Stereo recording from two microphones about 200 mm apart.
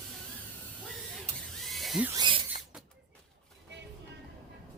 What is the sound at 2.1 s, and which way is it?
Speech, 25° right (ahead or behind).